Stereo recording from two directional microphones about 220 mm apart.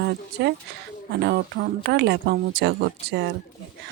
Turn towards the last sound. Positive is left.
turn(degrees=-50)  # may be behind; listen again after turning